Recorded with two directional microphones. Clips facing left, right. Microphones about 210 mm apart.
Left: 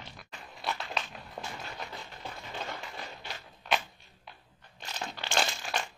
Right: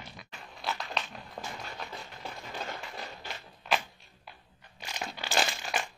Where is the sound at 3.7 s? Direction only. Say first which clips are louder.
Even; centre (ahead or behind).